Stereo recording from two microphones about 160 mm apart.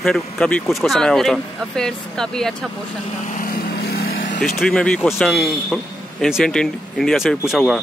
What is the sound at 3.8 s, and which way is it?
Vehicle, 80° left.